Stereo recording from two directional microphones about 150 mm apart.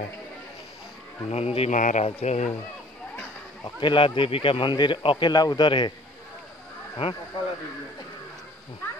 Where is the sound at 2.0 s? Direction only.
45° left (ahead or behind).